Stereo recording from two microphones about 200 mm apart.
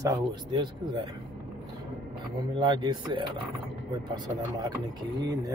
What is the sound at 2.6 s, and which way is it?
Speech, 20° right (ahead or behind).